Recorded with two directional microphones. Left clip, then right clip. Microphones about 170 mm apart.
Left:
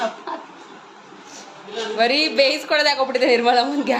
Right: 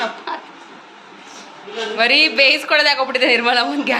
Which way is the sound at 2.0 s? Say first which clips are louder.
Right 4 dB; 25° left (ahead or behind).